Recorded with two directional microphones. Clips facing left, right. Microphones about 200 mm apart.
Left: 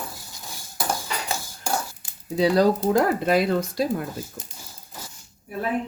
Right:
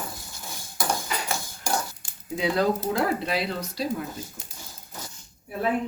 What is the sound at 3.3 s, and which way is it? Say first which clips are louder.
Speech: left 8 dB; 50° left (ahead or behind).